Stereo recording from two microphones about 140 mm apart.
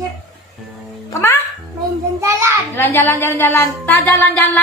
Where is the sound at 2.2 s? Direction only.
20° right (ahead or behind).